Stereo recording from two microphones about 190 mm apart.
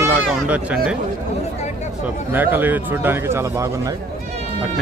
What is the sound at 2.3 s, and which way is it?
A man's voice, 10° right (ahead or behind).